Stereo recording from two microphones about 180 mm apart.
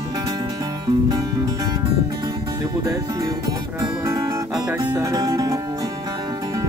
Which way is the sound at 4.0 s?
15° right (ahead or behind).